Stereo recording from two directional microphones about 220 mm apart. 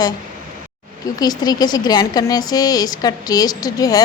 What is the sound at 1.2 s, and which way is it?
A woman's voice, 15° left (ahead or behind).